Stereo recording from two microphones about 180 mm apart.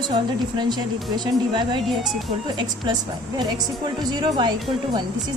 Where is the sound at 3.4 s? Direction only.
25° right (ahead or behind).